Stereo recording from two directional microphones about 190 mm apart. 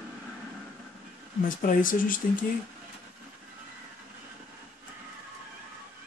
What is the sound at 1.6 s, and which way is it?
Speech, 45° left (ahead or behind).